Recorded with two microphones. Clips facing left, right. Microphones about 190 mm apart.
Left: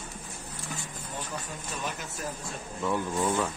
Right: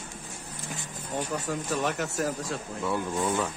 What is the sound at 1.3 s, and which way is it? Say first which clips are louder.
Speech: right 8 dB; 80° right.